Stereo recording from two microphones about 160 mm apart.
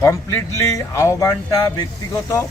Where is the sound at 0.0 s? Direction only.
20° left (ahead or behind).